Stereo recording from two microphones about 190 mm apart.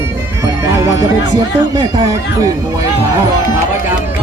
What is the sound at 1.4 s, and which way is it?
Speech, 20° right (ahead or behind).